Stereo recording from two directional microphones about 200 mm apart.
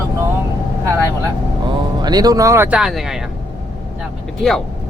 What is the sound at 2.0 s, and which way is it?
Speech, 20° right (ahead or behind).